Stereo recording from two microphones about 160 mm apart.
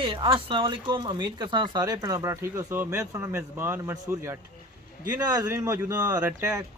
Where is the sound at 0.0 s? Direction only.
30° right (ahead or behind).